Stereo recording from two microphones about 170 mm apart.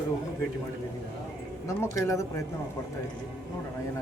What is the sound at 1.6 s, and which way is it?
Speech, 20° left (ahead or behind).